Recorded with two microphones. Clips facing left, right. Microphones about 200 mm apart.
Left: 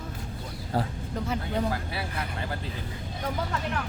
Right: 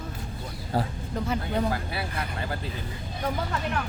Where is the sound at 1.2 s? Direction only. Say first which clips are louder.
Right 2 dB; 60° right (ahead or behind).